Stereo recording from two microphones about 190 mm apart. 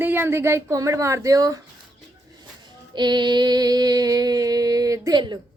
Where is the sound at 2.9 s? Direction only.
25° right (ahead or behind).